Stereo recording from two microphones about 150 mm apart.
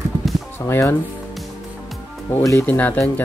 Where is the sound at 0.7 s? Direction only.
15° left (ahead or behind).